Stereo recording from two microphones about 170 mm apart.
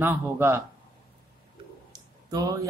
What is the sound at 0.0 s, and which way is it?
Speech, 15° right (ahead or behind).